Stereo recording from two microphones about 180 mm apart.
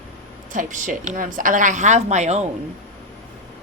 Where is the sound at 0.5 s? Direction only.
45° right (ahead or behind).